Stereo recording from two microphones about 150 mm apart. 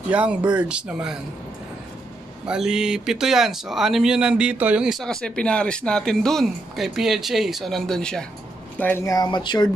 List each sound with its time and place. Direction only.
0.1 s speech: 10° right (ahead or behind)
2.4 s speech: 5° right (ahead or behind); by 9.7 s 30° left (ahead or behind)